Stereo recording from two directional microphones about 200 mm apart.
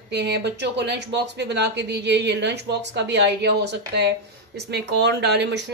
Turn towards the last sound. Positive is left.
turn(degrees=-60)  # may be behind; listen again after turning